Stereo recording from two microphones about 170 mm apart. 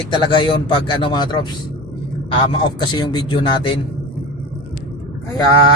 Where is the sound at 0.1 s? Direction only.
30° left (ahead or behind).